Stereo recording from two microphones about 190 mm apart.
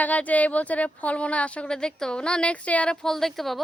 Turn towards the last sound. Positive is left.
turn(degrees=0)  # may be behind; listen again after turning